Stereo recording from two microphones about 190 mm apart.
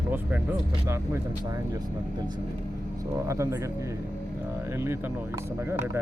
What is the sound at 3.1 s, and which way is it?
Speech, 15° right (ahead or behind).